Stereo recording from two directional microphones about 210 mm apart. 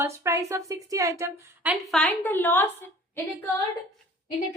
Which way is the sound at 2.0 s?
5° left (ahead or behind).